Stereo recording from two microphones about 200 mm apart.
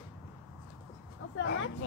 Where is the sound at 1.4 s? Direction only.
70° left (ahead or behind).